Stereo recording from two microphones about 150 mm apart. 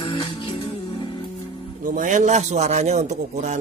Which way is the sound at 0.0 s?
30° left (ahead or behind).